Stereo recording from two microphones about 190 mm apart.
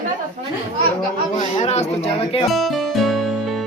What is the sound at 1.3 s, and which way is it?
Speech, 35° left (ahead or behind).